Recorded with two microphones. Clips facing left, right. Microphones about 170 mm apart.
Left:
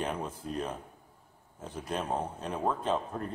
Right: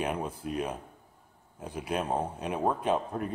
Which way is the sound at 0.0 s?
10° right (ahead or behind).